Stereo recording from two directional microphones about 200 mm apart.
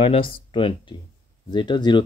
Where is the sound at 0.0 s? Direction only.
25° left (ahead or behind).